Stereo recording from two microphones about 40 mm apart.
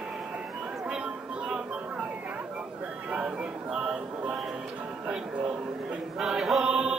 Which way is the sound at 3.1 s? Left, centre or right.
Centre.